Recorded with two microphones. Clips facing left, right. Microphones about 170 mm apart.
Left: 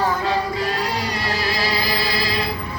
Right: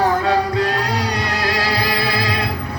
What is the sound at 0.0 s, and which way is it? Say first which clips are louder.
Music: right 4 dB; 65° right (ahead or behind).